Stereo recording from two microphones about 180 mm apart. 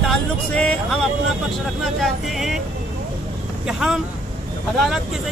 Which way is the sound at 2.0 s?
Centre (ahead or behind).